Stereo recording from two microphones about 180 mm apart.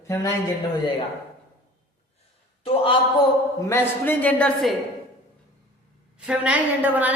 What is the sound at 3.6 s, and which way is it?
Speech, 15° left (ahead or behind).